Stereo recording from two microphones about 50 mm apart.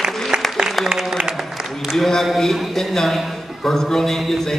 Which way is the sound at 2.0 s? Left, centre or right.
Centre.